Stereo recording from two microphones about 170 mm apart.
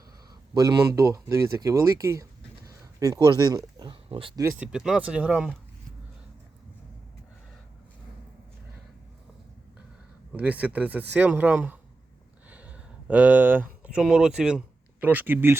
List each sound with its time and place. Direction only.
0.5 s speech: 20° right (ahead or behind)
4.4 s speech: 10° right (ahead or behind)
10.3 s speech: 10° right (ahead or behind)